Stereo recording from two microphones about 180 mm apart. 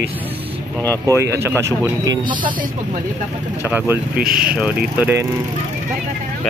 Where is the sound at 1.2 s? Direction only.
15° right (ahead or behind).